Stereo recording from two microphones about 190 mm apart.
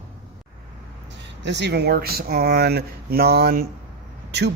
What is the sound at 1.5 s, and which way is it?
Speech, 65° right (ahead or behind).